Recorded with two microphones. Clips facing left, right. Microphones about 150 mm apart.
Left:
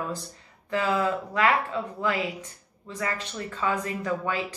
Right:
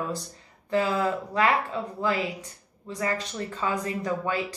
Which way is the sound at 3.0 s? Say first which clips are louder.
Right 2 dB; 30° right (ahead or behind).